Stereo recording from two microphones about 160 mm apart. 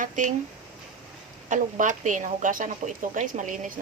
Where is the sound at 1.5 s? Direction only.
50° right (ahead or behind).